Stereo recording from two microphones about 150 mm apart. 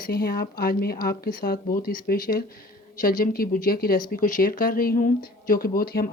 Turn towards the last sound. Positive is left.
turn(degrees=85)